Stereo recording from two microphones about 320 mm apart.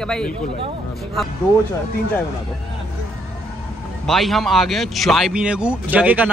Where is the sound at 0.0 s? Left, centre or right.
Centre.